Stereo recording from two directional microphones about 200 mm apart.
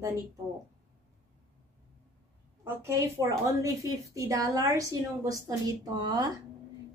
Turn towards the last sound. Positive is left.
turn(degrees=-20)  # may be behind; listen again after turning